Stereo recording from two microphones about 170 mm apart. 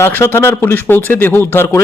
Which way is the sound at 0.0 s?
15° left (ahead or behind).